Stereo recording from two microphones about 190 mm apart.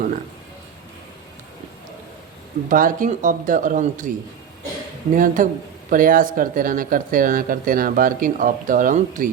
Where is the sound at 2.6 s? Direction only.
45° right (ahead or behind).